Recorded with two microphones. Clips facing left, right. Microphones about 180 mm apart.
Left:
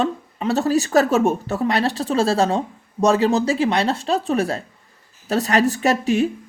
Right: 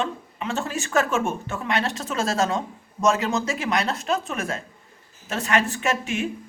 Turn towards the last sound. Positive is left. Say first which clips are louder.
# left 7 dB
turn(degrees=35)  # may be behind; listen again after turning